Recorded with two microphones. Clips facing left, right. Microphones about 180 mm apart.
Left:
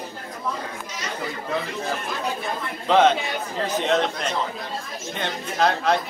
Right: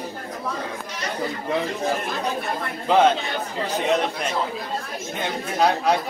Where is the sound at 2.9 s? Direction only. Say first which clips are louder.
Even; 10° right (ahead or behind).